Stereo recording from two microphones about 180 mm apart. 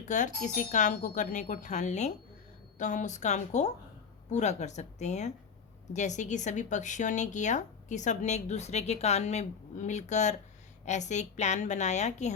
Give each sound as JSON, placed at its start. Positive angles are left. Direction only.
{"t": 0.0, "sound": "speech", "side_deg": 45}